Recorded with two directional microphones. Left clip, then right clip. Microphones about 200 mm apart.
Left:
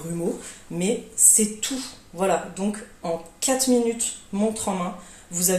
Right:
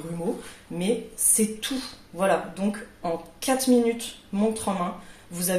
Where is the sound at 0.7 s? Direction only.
25° left (ahead or behind).